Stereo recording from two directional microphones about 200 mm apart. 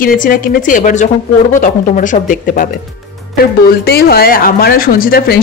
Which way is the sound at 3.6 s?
50° left (ahead or behind).